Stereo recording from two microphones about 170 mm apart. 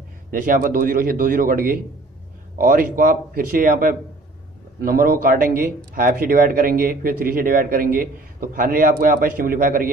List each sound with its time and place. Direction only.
0.3 s a man's voice: 55° right (ahead or behind)